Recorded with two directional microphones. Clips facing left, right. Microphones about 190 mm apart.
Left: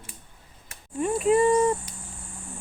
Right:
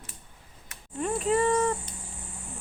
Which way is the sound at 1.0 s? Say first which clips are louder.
Left 5 dB; 10° left (ahead or behind).